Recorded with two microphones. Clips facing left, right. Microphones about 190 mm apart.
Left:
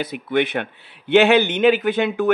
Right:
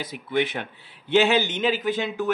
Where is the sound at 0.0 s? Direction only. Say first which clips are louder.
Left 4 dB; 65° left (ahead or behind).